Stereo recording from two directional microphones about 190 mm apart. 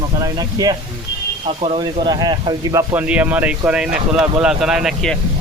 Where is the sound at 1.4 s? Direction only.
35° right (ahead or behind).